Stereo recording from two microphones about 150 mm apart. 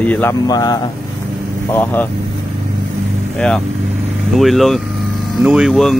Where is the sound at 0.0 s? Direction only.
10° left (ahead or behind).